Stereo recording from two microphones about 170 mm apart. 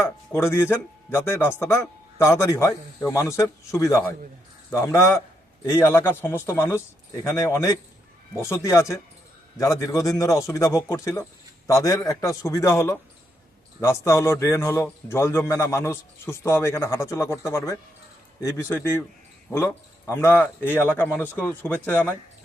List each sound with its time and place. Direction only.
0.0 s a man's voice: 15° left (ahead or behind)